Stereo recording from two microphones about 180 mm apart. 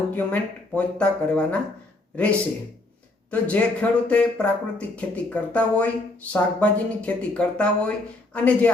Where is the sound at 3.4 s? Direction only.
5° left (ahead or behind).